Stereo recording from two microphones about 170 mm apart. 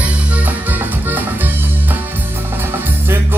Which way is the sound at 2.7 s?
15° right (ahead or behind).